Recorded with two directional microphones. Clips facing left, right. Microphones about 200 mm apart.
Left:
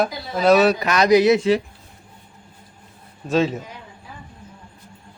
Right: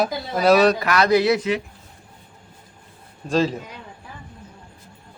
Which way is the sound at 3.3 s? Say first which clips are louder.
Left 1 dB; centre (ahead or behind).